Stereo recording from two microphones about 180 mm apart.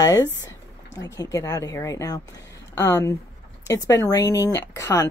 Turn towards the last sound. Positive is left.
turn(degrees=15)  # may be behind; listen again after turning